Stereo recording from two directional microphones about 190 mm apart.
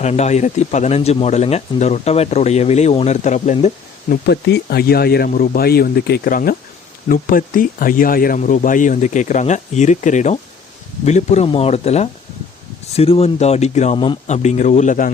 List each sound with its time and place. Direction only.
0.0 s speech: 35° left (ahead or behind)
4.1 s speech: 60° left (ahead or behind); by 15.1 s 45° left (ahead or behind)